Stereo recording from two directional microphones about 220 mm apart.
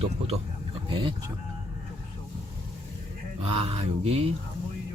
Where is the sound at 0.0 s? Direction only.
25° right (ahead or behind).